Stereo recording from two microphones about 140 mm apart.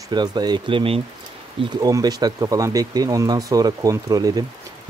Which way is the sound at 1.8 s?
25° right (ahead or behind).